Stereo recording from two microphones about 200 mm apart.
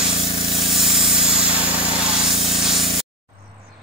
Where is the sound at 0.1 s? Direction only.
30° left (ahead or behind).